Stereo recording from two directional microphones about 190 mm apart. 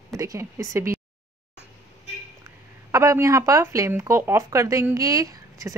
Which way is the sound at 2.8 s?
15° right (ahead or behind).